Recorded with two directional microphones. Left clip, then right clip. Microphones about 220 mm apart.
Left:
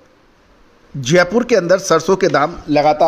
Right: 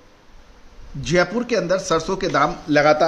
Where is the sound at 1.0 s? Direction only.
35° left (ahead or behind).